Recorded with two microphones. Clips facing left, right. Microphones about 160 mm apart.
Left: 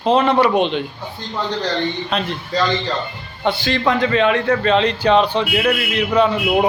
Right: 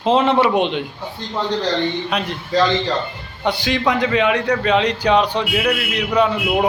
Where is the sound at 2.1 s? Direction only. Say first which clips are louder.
Right 1 dB; 10° right (ahead or behind).